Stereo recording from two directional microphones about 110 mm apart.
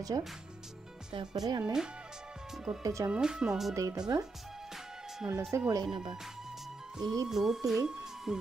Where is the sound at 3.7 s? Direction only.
30° right (ahead or behind).